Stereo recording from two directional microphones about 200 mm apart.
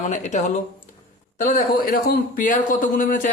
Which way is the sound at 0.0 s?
35° left (ahead or behind).